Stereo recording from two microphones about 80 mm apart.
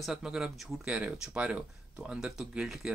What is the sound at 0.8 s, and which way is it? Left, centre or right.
Speech, centre.